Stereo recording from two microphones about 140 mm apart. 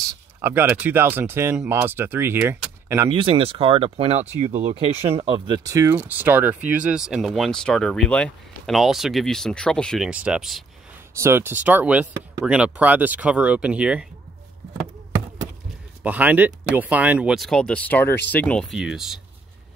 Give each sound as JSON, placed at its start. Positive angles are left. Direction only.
{"t": 0.4, "sound": "speech", "side_deg": -15}
{"t": 3.1, "sound": "speech", "side_deg": -35}
{"t": 5.6, "sound": "speech", "side_deg": -20}
{"t": 10.0, "sound": "speech", "side_deg": -5}
{"t": 11.1, "sound": "speech", "side_deg": -20}
{"t": 16.0, "sound": "speech", "side_deg": -10}